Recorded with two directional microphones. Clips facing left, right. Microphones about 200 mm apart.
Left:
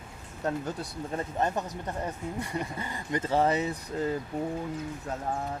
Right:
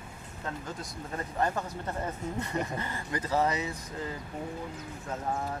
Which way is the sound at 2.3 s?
15° left (ahead or behind).